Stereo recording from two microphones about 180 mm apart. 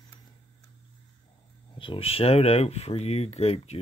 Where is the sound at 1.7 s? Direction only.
30° left (ahead or behind).